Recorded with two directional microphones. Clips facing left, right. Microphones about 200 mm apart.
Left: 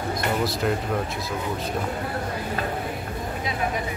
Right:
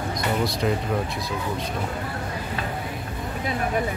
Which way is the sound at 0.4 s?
Centre (ahead or behind).